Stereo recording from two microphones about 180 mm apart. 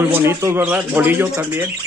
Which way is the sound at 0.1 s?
15° right (ahead or behind).